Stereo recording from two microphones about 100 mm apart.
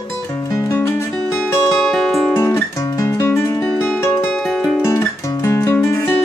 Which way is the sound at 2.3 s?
30° left (ahead or behind).